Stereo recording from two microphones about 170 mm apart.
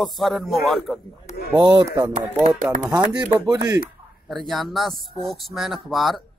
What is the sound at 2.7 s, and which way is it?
Speech, 5° right (ahead or behind).